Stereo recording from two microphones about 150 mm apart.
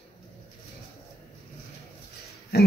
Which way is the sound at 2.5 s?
90° left.